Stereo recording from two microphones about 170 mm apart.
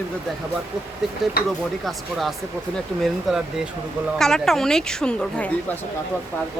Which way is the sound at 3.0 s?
5° right (ahead or behind).